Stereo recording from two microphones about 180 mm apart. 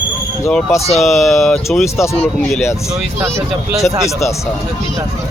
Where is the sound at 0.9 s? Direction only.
Centre (ahead or behind).